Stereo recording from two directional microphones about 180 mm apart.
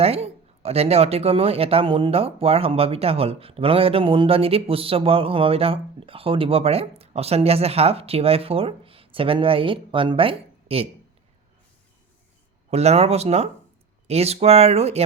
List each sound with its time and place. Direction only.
0.0 s speech: 35° right (ahead or behind)
12.7 s speech: 35° right (ahead or behind)